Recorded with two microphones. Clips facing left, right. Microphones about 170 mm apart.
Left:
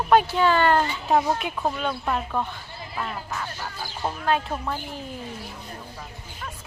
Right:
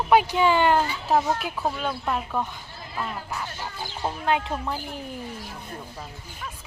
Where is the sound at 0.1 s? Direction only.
10° right (ahead or behind).